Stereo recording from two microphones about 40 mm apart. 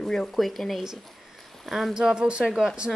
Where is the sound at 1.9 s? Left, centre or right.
Right.